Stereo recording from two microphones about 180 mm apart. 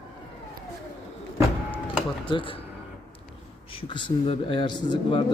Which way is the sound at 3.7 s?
30° left (ahead or behind).